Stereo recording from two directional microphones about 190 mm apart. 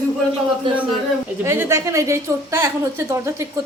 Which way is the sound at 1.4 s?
15° right (ahead or behind).